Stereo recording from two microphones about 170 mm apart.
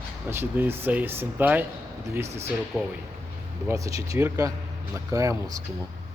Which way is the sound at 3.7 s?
20° right (ahead or behind).